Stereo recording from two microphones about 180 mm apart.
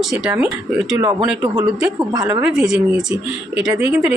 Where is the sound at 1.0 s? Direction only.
20° right (ahead or behind).